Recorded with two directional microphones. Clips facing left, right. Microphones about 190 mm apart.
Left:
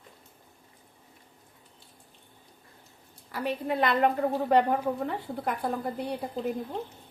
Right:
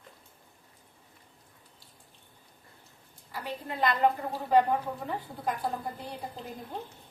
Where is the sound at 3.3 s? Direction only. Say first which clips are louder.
Left 7 dB; 70° left (ahead or behind).